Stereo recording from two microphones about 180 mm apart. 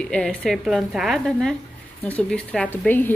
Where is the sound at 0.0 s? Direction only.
5° left (ahead or behind).